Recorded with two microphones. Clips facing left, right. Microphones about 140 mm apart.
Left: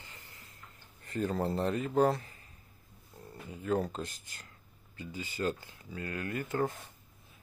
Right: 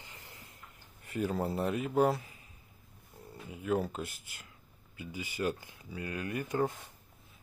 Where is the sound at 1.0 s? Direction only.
10° right (ahead or behind).